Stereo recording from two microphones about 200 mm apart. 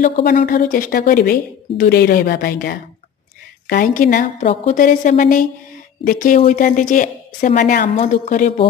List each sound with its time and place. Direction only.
0.0 s a woman's voice: 40° left (ahead or behind)